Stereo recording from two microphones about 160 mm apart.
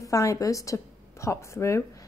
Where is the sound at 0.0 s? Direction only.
20° left (ahead or behind).